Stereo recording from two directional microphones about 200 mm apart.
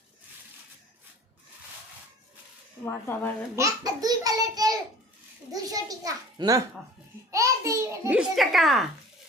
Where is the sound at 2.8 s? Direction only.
10° left (ahead or behind).